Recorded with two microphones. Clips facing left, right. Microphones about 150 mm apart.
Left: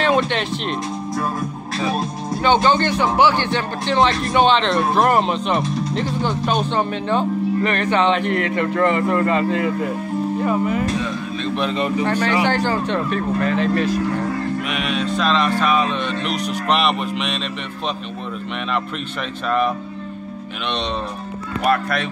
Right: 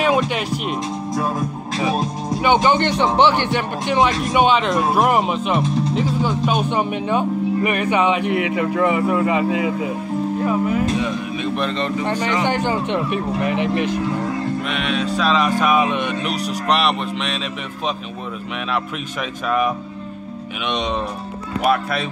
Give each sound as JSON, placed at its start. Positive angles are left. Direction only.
{"t": 0.0, "sound": "speech", "side_deg": -10}
{"t": 1.8, "sound": "speech", "side_deg": -15}
{"t": 12.0, "sound": "speech", "side_deg": -15}
{"t": 14.7, "sound": "speech", "side_deg": 0}
{"t": 16.6, "sound": "speech", "side_deg": 0}